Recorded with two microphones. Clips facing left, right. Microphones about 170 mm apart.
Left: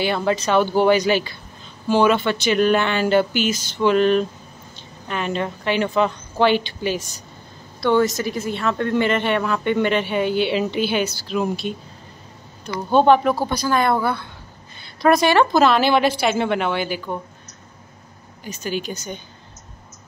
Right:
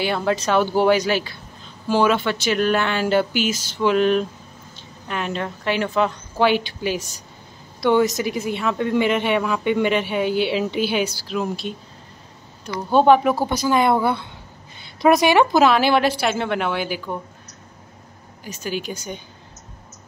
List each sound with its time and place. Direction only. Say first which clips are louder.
0.0 s speech: left 1 dB; centre (ahead or behind)
12.9 s speech: even; 10° right (ahead or behind)
18.4 s speech: left 1 dB; 5° right (ahead or behind)